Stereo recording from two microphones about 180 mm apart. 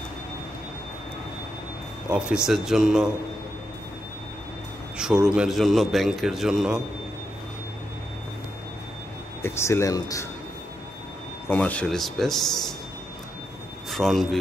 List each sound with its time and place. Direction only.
2.0 s a man's voice: 5° right (ahead or behind)
4.9 s a man's voice: 5° right (ahead or behind)
9.4 s speech: 15° left (ahead or behind)
11.4 s a man's voice: 10° left (ahead or behind)
13.8 s speech: centre (ahead or behind)